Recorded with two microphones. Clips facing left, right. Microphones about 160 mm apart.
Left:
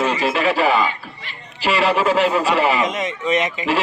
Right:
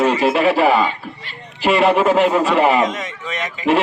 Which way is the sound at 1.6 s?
50° right (ahead or behind).